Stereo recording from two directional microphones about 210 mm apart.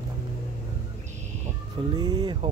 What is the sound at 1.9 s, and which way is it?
Speech, 20° right (ahead or behind).